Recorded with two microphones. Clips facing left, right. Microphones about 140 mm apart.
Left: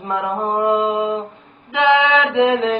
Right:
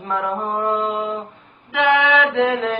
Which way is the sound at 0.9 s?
20° left (ahead or behind).